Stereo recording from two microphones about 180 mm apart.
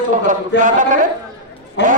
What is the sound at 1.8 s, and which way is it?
Speech, 75° left (ahead or behind).